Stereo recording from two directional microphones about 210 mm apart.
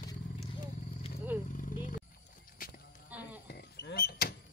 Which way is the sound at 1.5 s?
40° left (ahead or behind).